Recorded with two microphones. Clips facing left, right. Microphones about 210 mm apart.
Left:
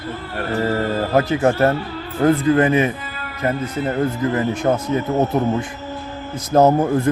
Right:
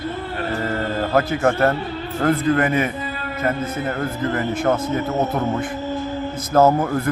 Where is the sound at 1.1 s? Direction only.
20° left (ahead or behind).